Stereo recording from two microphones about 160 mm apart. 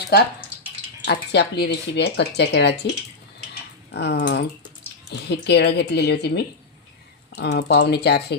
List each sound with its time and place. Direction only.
1.0 s speech: 90° left
3.9 s speech: 90° left; by 4.4 s 75° left (ahead or behind)
5.3 s speech: 90° left